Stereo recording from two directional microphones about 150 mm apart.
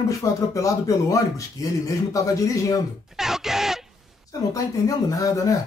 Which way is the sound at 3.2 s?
5° right (ahead or behind).